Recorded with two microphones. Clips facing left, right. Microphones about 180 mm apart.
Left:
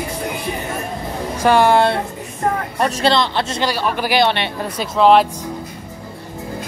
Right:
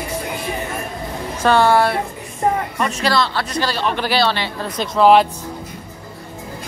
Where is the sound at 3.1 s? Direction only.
20° left (ahead or behind).